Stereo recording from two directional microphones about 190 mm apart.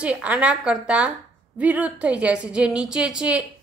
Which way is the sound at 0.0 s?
5° right (ahead or behind).